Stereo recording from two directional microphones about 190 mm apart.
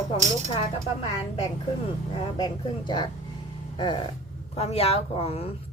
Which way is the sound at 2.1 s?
25° left (ahead or behind).